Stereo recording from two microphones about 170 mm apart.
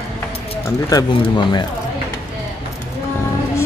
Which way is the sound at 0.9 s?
25° left (ahead or behind).